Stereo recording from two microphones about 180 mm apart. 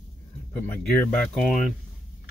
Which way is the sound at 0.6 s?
10° left (ahead or behind).